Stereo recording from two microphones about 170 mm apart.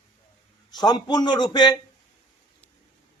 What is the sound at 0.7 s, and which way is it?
A man's voice, 25° left (ahead or behind).